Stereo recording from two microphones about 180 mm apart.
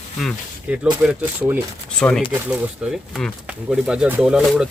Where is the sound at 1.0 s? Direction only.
5° right (ahead or behind).